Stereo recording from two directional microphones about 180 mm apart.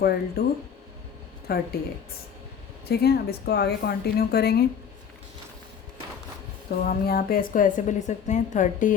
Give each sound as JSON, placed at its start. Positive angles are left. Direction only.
{"t": 0.0, "sound": "a woman's voice", "side_deg": 60}
{"t": 1.5, "sound": "a woman's voice", "side_deg": 60}
{"t": 2.9, "sound": "a woman's voice", "side_deg": 60}
{"t": 6.8, "sound": "a woman's voice", "side_deg": 55}